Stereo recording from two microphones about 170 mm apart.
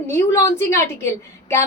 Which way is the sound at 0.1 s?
15° left (ahead or behind).